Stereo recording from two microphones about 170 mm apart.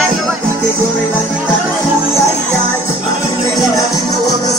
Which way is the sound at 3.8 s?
20° left (ahead or behind).